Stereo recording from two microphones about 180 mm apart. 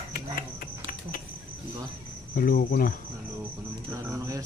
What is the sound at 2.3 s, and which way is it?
Cricket, 50° left (ahead or behind).